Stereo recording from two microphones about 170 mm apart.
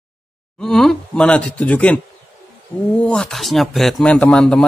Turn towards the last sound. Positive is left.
turn(degrees=5)  # may be behind; listen again after turning